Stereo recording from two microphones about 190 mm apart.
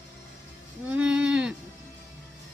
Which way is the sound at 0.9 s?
5° right (ahead or behind).